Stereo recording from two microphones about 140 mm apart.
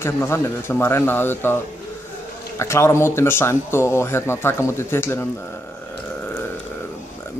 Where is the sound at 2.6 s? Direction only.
20° left (ahead or behind).